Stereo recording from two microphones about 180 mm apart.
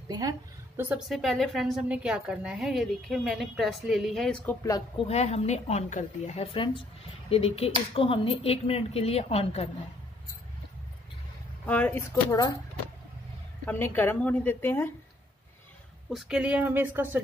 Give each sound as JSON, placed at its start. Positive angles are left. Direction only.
{"t": 0.1, "sound": "a woman's voice", "side_deg": -20}
{"t": 0.7, "sound": "a woman's voice", "side_deg": -5}
{"t": 4.6, "sound": "speech", "side_deg": 20}
{"t": 5.0, "sound": "a woman's voice", "side_deg": 35}
{"t": 11.6, "sound": "a woman's voice", "side_deg": 10}
{"t": 13.7, "sound": "a woman's voice", "side_deg": 10}
{"t": 16.1, "sound": "speech", "side_deg": -5}